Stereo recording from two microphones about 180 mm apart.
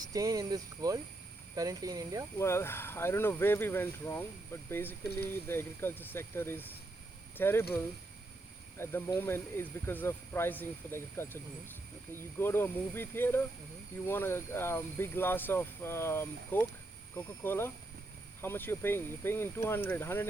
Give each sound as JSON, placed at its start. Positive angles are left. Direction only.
{"t": 0.1, "sound": "speech", "side_deg": -20}
{"t": 2.4, "sound": "speech", "side_deg": 15}
{"t": 8.8, "sound": "speech", "side_deg": 10}
{"t": 12.4, "sound": "speech", "side_deg": 10}